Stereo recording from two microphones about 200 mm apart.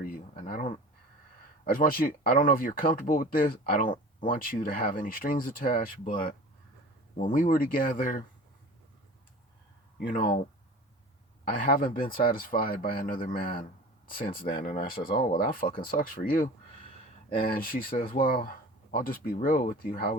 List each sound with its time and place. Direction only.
0.0 s a sound: 45° left (ahead or behind)
1.6 s speech: 45° left (ahead or behind)
7.2 s speech: 40° left (ahead or behind)
11.4 s speech: 45° left (ahead or behind)